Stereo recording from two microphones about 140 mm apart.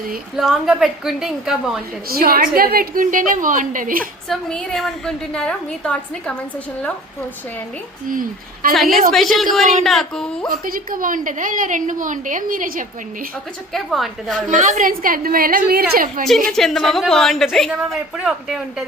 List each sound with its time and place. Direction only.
0.3 s a woman's voice: 5° right (ahead or behind)
2.0 s a woman's voice: 90° right; by 4.0 s 75° right (ahead or behind)
4.3 s a woman's voice: 5° left (ahead or behind)
8.1 s a woman's voice: 85° right
8.7 s a woman's voice: centre (ahead or behind)
10.5 s a woman's voice: 85° right
13.7 s a woman's voice: centre (ahead or behind)
14.5 s a woman's voice: 60° right (ahead or behind); by 16.2 s 85° right
16.5 s a woman's voice: centre (ahead or behind)